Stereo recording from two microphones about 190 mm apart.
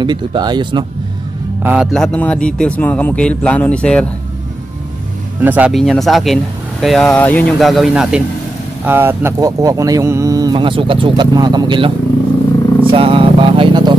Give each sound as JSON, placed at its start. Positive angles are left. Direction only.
{"t": 0.0, "sound": "speech", "side_deg": -25}
{"t": 1.6, "sound": "speech", "side_deg": -10}
{"t": 1.9, "sound": "speech", "side_deg": 5}
{"t": 5.4, "sound": "speech", "side_deg": -10}
{"t": 12.8, "sound": "vehicle", "side_deg": -30}